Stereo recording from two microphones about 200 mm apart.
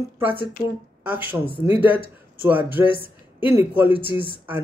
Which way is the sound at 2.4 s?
10° right (ahead or behind).